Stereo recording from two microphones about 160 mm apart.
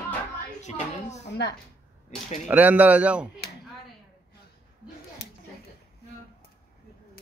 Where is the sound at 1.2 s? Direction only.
90° left.